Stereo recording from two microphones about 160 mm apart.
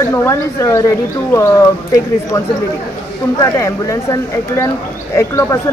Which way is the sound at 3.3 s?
20° left (ahead or behind).